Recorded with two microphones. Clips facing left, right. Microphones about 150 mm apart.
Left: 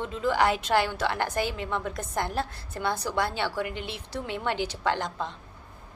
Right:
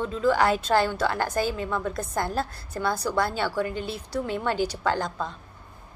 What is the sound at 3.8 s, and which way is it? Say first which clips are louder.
Speech: right 5 dB; 40° right (ahead or behind).